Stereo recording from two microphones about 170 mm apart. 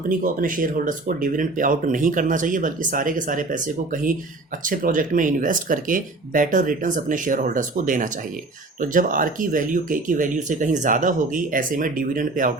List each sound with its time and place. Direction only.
0.4 s speech: 55° right (ahead or behind)